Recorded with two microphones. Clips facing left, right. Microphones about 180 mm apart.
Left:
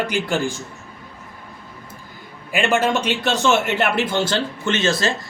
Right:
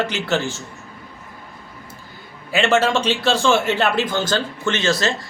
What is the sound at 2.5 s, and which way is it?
A man's voice, 15° left (ahead or behind).